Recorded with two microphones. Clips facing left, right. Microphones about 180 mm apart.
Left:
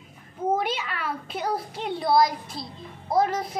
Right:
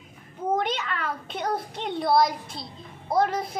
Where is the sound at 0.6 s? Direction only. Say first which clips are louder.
Right 1 dB; 5° left (ahead or behind).